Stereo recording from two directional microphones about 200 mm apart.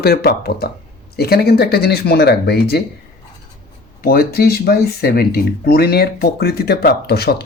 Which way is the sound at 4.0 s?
50° left (ahead or behind).